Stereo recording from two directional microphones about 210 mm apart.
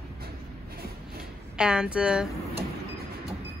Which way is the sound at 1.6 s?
5° right (ahead or behind).